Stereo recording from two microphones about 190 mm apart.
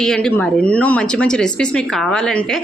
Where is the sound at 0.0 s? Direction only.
5° left (ahead or behind).